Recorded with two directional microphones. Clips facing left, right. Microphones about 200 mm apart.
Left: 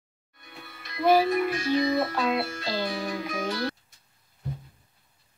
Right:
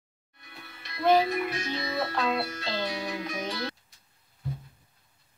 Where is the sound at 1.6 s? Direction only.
10° left (ahead or behind).